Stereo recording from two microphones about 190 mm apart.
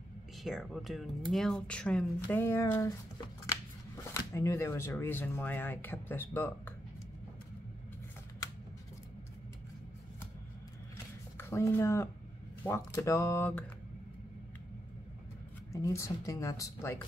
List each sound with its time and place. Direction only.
0.4 s speech: centre (ahead or behind)
11.3 s speech: 15° left (ahead or behind)
15.7 s speech: 15° left (ahead or behind)